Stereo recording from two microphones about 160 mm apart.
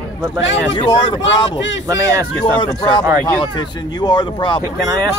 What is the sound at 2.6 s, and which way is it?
Speech, 30° left (ahead or behind).